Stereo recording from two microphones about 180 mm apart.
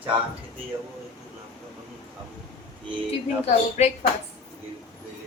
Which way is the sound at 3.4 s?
35° left (ahead or behind).